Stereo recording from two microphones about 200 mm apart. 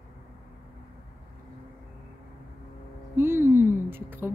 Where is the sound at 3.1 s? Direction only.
10° right (ahead or behind).